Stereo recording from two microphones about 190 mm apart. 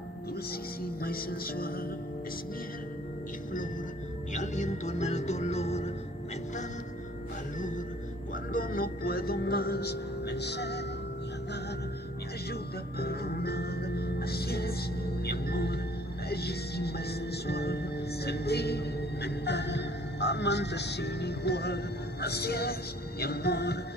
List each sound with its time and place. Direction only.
0.5 s music: 50° left (ahead or behind)
4.3 s speech: 40° left (ahead or behind)
7.5 s music: 40° left (ahead or behind)
8.5 s speech: 50° left (ahead or behind)
13.0 s music: 55° left (ahead or behind)
15.2 s speech: 55° left (ahead or behind)